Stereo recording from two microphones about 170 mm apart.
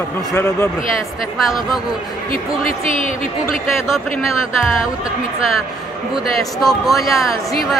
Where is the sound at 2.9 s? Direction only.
50° left (ahead or behind).